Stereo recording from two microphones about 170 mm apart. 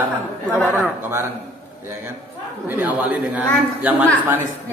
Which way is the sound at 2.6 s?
10° right (ahead or behind).